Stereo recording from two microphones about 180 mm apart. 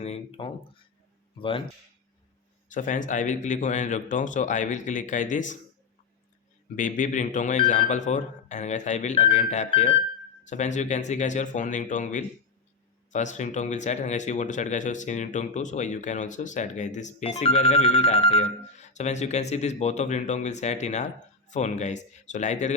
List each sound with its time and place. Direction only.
0.0 s speech: 35° left (ahead or behind)
2.6 s a man's voice: 45° left (ahead or behind)
6.7 s speech: 45° left (ahead or behind)